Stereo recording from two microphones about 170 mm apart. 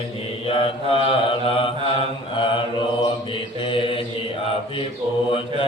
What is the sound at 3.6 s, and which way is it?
Mantra, 30° left (ahead or behind).